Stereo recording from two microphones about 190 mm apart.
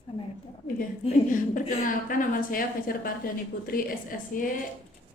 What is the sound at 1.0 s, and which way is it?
A woman's voice, 45° left (ahead or behind).